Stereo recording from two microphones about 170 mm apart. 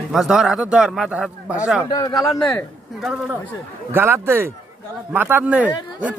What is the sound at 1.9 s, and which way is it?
Speech, 20° left (ahead or behind).